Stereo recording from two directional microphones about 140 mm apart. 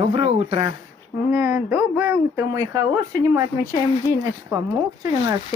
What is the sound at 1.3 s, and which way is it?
Speech, 15° right (ahead or behind).